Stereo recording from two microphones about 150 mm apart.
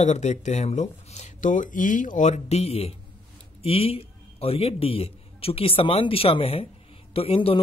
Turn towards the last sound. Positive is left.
turn(degrees=40)  # may be behind; listen again after turning